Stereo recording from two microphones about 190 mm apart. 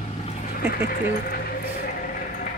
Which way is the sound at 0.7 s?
50° left (ahead or behind).